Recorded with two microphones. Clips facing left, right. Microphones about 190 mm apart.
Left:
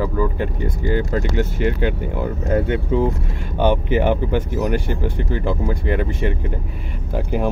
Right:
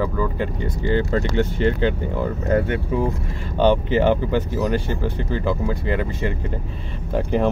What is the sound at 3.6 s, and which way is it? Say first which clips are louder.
Speech: right 1 dB; 15° left (ahead or behind).